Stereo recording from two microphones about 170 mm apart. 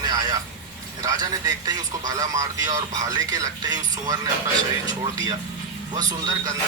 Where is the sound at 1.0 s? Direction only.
20° right (ahead or behind).